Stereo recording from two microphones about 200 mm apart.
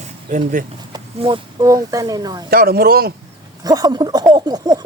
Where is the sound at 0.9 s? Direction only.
25° right (ahead or behind).